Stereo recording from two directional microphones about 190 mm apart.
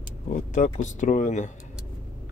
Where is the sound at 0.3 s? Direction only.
40° left (ahead or behind).